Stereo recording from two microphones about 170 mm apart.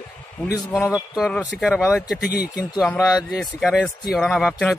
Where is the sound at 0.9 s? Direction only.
Centre (ahead or behind).